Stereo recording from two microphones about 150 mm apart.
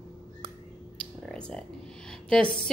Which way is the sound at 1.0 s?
5° left (ahead or behind).